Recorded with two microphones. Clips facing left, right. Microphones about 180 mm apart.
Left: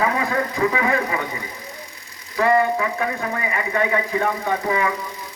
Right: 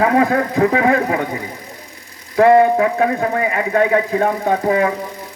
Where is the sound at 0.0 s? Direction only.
55° right (ahead or behind).